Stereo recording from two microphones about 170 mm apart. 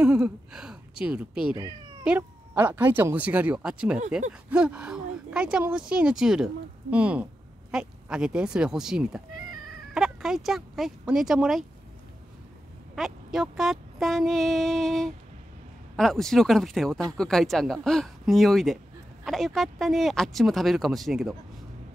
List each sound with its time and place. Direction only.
0.0 s a woman's voice: 5° right (ahead or behind)
1.6 s cat: 25° right (ahead or behind)
2.0 s speech: 10° right (ahead or behind)
12.9 s speech: centre (ahead or behind)